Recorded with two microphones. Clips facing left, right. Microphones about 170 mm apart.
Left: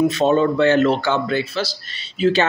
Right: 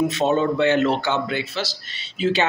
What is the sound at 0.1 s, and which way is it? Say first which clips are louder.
Speech: left 3 dB; 20° right (ahead or behind).